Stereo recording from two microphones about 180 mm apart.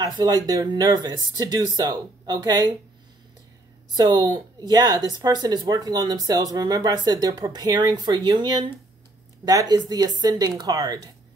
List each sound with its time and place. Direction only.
0.0 s speech: 20° right (ahead or behind)
3.9 s speech: 25° right (ahead or behind)